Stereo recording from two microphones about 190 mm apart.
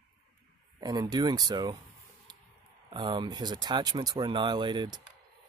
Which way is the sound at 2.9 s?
25° right (ahead or behind).